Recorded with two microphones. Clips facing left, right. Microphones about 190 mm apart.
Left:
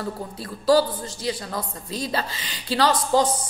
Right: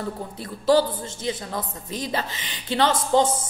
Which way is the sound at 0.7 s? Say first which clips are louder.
Even; 20° right (ahead or behind).